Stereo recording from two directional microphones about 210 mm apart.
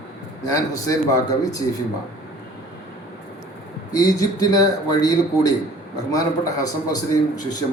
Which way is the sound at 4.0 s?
15° left (ahead or behind).